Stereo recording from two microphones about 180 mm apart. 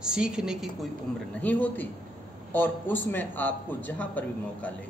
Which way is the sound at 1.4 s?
10° left (ahead or behind).